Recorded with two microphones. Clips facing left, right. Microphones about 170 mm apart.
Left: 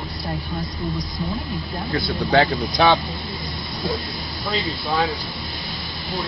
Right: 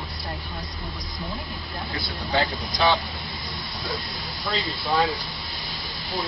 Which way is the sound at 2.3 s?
65° left (ahead or behind).